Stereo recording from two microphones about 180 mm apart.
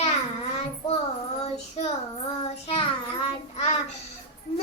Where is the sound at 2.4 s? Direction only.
35° left (ahead or behind).